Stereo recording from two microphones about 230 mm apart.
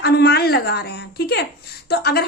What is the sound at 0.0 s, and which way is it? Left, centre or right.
A woman's voice, left.